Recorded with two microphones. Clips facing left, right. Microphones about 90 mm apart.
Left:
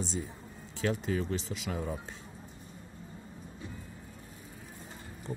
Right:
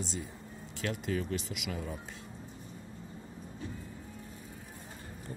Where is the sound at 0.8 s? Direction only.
90° right.